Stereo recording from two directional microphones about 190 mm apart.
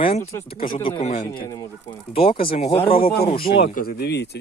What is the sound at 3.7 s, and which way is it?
Speech, 60° left (ahead or behind).